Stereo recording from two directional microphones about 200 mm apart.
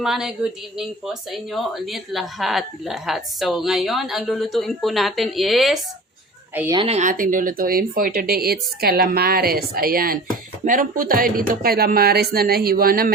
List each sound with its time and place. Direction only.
0.0 s a woman's voice: centre (ahead or behind)
6.7 s speech: 30° right (ahead or behind); by 13.1 s 50° right (ahead or behind)